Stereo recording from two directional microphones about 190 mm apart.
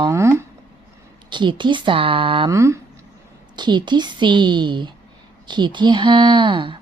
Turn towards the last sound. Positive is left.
turn(degrees=-25)  # may be behind; listen again after turning